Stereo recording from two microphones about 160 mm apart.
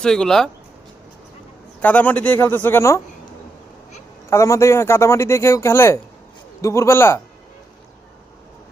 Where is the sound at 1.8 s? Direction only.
10° left (ahead or behind).